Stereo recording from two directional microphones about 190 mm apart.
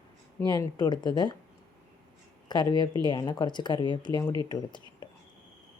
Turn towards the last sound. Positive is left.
turn(degrees=25)  # may be behind; listen again after turning